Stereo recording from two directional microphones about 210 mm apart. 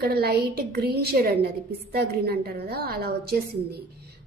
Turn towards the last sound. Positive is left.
turn(degrees=-50)  # may be behind; listen again after turning